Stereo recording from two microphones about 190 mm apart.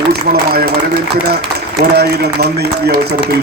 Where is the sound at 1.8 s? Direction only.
60° right (ahead or behind).